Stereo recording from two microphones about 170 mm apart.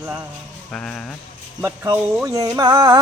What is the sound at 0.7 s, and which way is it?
Speech, 5° left (ahead or behind).